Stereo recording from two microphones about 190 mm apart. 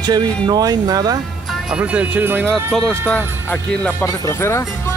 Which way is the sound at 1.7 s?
5° right (ahead or behind).